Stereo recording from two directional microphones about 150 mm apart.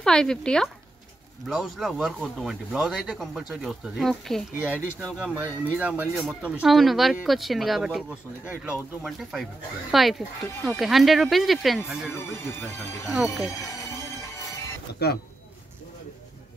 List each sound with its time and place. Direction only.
0.0 s speech: 5° left (ahead or behind)
5.2 s speech: 10° right (ahead or behind)
12.1 s speech: 20° left (ahead or behind)
13.1 s speech: centre (ahead or behind)
15.0 s speech: 90° left